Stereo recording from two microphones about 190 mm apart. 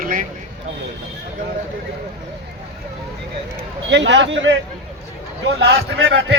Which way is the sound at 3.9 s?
70° right (ahead or behind).